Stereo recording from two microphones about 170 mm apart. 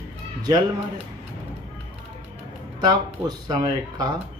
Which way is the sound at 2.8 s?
25° right (ahead or behind).